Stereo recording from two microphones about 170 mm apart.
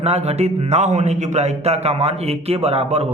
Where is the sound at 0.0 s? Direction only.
40° right (ahead or behind).